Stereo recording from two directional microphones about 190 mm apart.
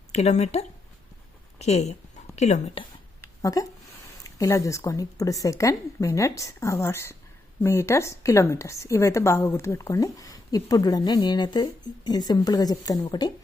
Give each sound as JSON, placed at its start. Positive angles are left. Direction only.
{"t": 0.1, "sound": "a woman's voice", "side_deg": 35}
{"t": 3.4, "sound": "a woman's voice", "side_deg": 20}